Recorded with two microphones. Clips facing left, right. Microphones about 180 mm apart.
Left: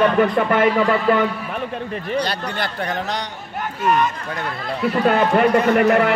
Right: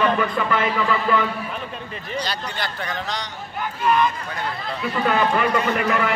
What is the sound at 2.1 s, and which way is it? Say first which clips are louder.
Speech: left 4 dB; 60° left (ahead or behind).